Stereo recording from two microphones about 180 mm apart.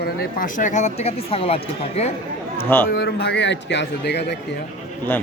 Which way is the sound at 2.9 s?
60° left (ahead or behind).